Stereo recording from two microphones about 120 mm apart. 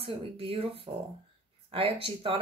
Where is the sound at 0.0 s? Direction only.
50° right (ahead or behind).